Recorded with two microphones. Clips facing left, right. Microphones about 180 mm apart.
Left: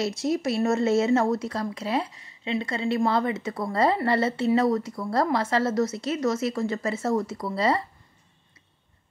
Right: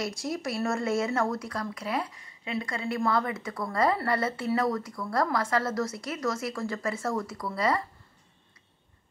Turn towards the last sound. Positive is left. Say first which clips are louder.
# left 3 dB
turn(degrees=25)  # may be behind; listen again after turning